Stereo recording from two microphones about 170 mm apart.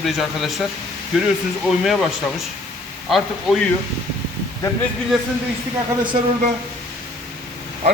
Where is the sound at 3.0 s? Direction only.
Centre (ahead or behind).